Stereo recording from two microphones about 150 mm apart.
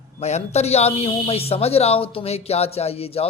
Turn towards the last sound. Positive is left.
turn(degrees=40)  # may be behind; listen again after turning